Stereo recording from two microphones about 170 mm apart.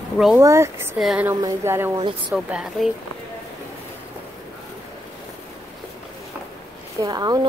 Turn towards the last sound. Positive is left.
turn(degrees=-25)  # may be behind; listen again after turning